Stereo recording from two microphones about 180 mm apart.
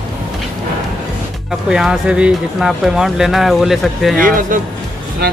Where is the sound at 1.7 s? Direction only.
5° right (ahead or behind).